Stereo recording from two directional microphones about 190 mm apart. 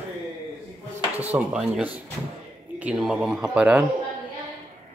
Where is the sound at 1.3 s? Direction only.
5° right (ahead or behind).